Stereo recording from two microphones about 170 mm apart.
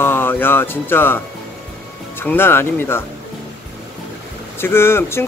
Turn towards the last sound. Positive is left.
turn(degrees=15)  # may be behind; listen again after turning